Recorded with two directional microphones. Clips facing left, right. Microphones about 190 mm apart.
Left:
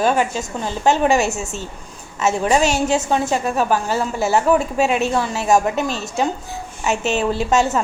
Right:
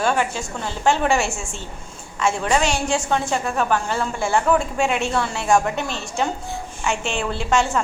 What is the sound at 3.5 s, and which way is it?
Speech, 10° left (ahead or behind).